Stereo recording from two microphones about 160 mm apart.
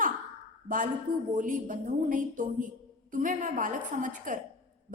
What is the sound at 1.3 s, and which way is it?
A woman's voice, 55° right (ahead or behind).